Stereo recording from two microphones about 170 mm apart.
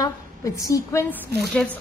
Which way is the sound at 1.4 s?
5° left (ahead or behind).